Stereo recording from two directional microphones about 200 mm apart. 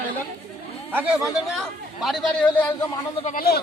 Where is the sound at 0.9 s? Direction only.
5° right (ahead or behind); by 3.0 s 15° left (ahead or behind).